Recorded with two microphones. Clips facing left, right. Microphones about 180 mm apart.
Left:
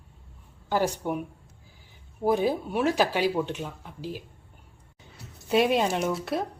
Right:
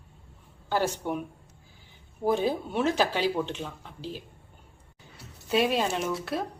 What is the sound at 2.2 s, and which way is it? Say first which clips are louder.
Speech: left 2 dB; 10° left (ahead or behind).